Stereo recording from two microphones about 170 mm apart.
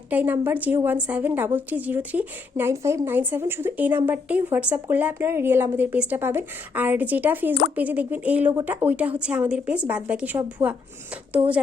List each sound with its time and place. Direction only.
0.1 s a woman's voice: 10° right (ahead or behind)